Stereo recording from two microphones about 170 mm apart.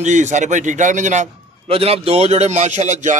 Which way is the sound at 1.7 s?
35° right (ahead or behind).